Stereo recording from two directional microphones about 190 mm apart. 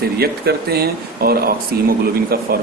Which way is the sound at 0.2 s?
55° right (ahead or behind).